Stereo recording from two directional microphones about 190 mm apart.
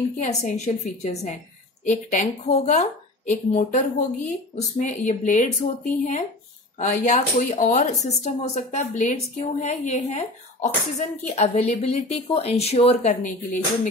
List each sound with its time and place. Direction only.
0.2 s a woman's voice: 40° left (ahead or behind)